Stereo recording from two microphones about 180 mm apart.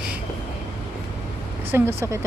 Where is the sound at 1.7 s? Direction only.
15° right (ahead or behind).